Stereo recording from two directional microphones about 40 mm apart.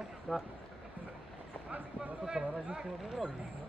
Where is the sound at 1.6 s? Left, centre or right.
Right.